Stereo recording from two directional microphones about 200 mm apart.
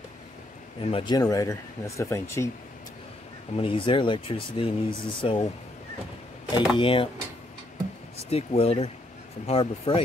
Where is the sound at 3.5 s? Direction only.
25° left (ahead or behind).